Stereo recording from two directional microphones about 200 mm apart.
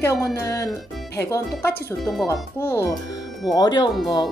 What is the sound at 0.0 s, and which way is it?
Speech, 15° left (ahead or behind).